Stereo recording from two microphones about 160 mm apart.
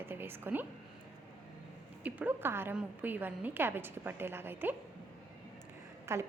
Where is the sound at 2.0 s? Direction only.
10° right (ahead or behind).